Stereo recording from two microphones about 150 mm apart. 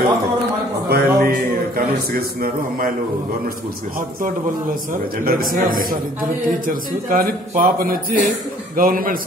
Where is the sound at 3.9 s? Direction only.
65° right (ahead or behind).